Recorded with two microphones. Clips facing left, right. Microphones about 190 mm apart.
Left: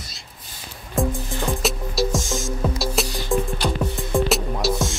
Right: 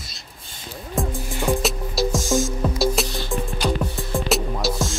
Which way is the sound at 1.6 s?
Centre (ahead or behind).